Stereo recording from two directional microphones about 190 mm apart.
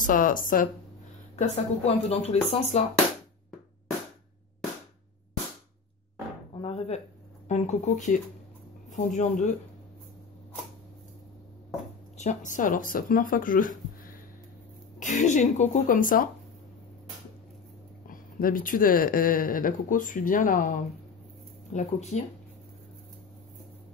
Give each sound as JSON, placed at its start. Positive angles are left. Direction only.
{"t": 0.0, "sound": "speech", "side_deg": 45}
{"t": 1.5, "sound": "speech", "side_deg": 35}
{"t": 6.6, "sound": "speech", "side_deg": 30}
{"t": 12.2, "sound": "speech", "side_deg": 40}
{"t": 15.0, "sound": "speech", "side_deg": 40}
{"t": 18.0, "sound": "speech", "side_deg": 45}